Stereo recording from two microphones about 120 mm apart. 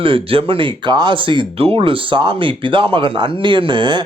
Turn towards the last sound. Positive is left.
turn(degrees=-40)  # may be behind; listen again after turning